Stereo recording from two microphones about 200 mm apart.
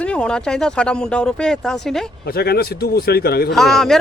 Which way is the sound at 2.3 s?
50° left (ahead or behind).